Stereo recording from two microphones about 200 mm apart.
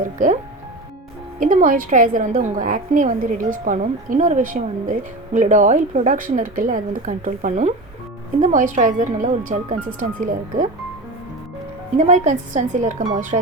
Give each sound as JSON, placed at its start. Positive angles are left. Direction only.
{"t": 0.0, "sound": "speech", "side_deg": -40}
{"t": 1.4, "sound": "a woman's voice", "side_deg": -40}
{"t": 11.9, "sound": "a woman's voice", "side_deg": -35}